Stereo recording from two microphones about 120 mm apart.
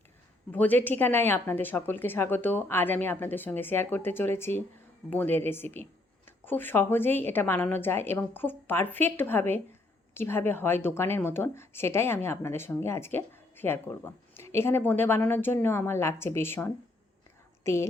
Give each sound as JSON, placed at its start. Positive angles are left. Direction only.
{"t": 0.5, "sound": "a woman's voice", "side_deg": 15}